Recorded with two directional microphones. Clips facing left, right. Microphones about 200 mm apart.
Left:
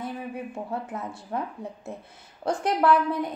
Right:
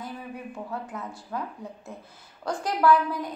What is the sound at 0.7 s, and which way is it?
Speech, 25° left (ahead or behind).